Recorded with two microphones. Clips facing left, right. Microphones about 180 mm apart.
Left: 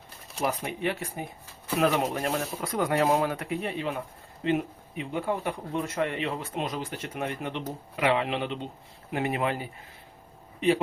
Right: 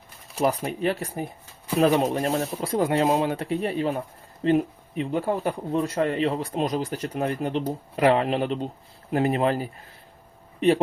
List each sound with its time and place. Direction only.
0.3 s speech: 40° right (ahead or behind)